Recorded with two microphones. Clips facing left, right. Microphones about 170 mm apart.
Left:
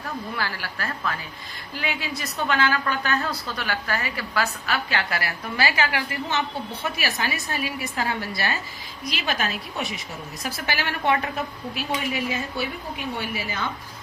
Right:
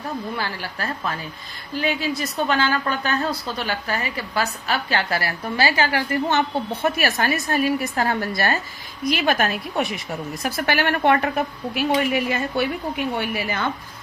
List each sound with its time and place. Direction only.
0.3 s a woman's voice: 25° right (ahead or behind)
1.8 s a woman's voice: 35° right (ahead or behind)
4.4 s a woman's voice: 30° right (ahead or behind); by 13.7 s 60° right (ahead or behind)